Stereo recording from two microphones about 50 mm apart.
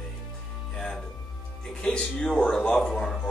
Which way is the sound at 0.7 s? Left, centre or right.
Centre.